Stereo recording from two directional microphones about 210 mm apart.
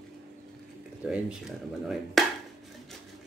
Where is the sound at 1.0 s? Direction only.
5° right (ahead or behind).